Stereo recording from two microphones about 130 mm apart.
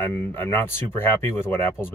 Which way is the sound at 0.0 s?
15° left (ahead or behind).